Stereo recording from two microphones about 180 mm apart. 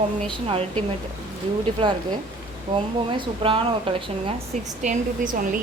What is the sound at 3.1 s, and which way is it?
Speech, 30° right (ahead or behind).